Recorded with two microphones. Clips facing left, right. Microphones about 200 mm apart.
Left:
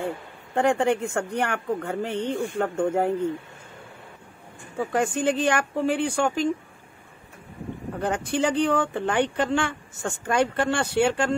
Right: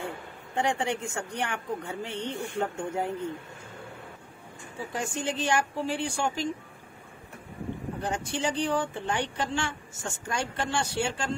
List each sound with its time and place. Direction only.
0.6 s speech: 55° left (ahead or behind)
4.7 s speech: 55° left (ahead or behind)
8.0 s speech: 55° left (ahead or behind)